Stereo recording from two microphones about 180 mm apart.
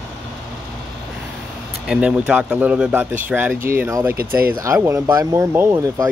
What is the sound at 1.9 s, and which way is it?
Speech, 5° right (ahead or behind).